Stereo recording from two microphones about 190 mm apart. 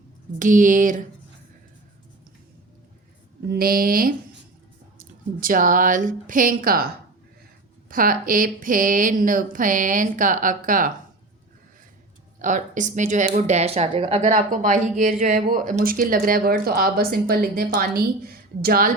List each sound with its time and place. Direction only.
0.3 s speech: 45° right (ahead or behind)
3.5 s speech: 50° right (ahead or behind)
7.9 s speech: 45° right (ahead or behind)
12.4 s speech: 40° right (ahead or behind)